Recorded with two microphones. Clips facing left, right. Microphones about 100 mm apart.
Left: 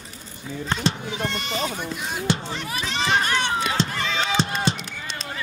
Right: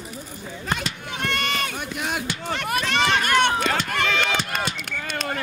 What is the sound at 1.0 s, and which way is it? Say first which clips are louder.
Goat: right 1 dB; 60° right (ahead or behind).